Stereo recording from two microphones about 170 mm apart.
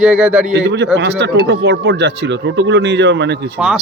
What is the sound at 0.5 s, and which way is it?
Speech, 90° right.